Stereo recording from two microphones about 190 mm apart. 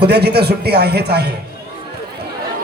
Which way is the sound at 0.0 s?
60° right (ahead or behind).